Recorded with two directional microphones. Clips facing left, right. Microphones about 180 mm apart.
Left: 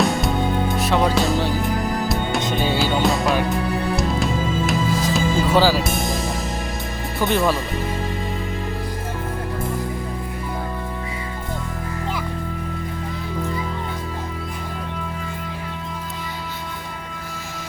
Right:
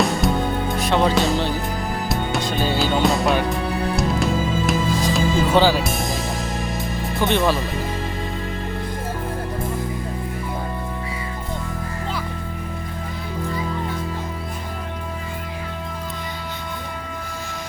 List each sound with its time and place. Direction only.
0.0 s music: centre (ahead or behind)
2.4 s music: 20° left (ahead or behind)
2.7 s music: centre (ahead or behind)
7.2 s speech: centre (ahead or behind)